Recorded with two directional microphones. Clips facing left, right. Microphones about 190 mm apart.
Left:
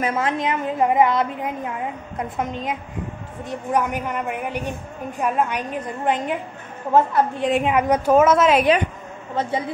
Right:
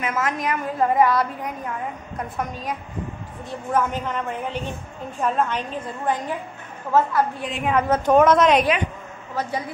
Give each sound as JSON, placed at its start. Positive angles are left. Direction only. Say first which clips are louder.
{"t": 0.0, "sound": "a woman's voice", "louder": "left 3 dB", "side_deg": 30}
{"t": 7.6, "sound": "a woman's voice", "louder": "right 4 dB", "side_deg": 10}
{"t": 9.3, "sound": "a woman's voice", "louder": "left 3 dB", "side_deg": 25}